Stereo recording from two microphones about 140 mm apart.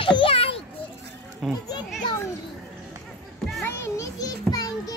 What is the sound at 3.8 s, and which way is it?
Child singing, 25° left (ahead or behind).